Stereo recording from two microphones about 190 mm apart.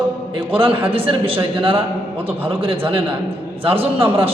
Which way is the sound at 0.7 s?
10° right (ahead or behind).